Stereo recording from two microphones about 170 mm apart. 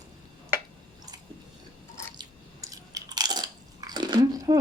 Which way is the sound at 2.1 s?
20° right (ahead or behind).